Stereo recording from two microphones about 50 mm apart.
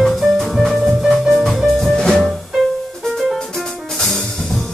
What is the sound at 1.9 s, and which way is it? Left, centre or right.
Music, centre.